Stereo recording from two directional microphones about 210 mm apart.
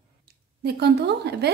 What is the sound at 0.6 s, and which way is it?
Speech, 50° right (ahead or behind).